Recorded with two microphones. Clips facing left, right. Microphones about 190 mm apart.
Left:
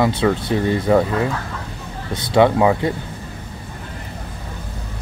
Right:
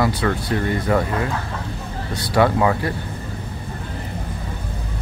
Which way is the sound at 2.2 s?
20° left (ahead or behind).